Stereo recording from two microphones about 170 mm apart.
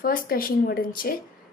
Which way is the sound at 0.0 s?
60° left (ahead or behind).